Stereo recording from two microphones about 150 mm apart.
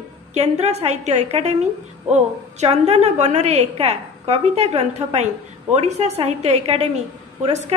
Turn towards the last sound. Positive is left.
turn(degrees=-45)  # may be behind; listen again after turning